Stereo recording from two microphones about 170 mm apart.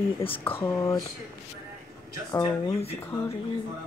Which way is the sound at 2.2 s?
20° left (ahead or behind).